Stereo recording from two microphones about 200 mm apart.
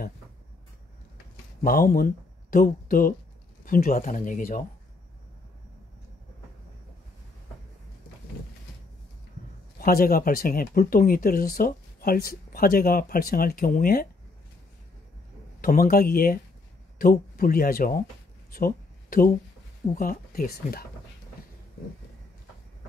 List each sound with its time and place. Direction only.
1.6 s speech: 45° left (ahead or behind)
9.8 s speech: 50° left (ahead or behind)
15.6 s speech: 45° left (ahead or behind)
18.5 s a sound: 45° left (ahead or behind)
20.0 s speech: 45° left (ahead or behind)